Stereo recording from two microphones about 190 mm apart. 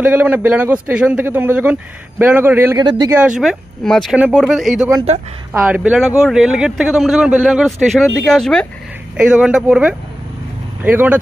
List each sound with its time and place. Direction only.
0.0 s a man's voice: 10° right (ahead or behind)
2.8 s speech: 25° right (ahead or behind)
3.1 s a man's voice: 5° right (ahead or behind)